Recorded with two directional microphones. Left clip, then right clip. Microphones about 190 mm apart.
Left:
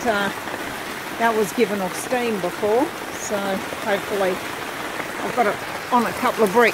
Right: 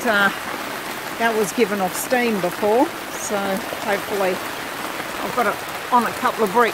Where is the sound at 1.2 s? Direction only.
10° right (ahead or behind).